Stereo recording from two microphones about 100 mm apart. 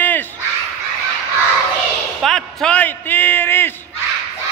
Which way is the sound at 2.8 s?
20° left (ahead or behind).